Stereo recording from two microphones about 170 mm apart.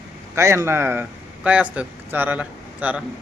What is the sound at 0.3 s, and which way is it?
A man's voice, 15° right (ahead or behind).